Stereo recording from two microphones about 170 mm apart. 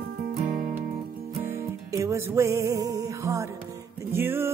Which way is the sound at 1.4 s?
20° right (ahead or behind).